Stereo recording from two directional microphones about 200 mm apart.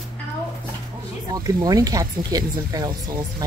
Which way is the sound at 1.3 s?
20° right (ahead or behind).